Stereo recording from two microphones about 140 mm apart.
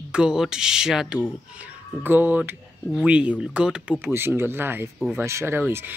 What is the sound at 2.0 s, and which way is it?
Speech, 15° right (ahead or behind).